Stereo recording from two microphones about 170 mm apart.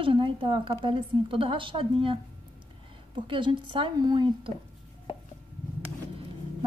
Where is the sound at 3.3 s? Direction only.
30° right (ahead or behind).